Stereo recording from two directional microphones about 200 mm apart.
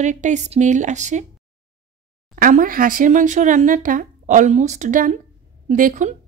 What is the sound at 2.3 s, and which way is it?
A woman's voice, 45° right (ahead or behind).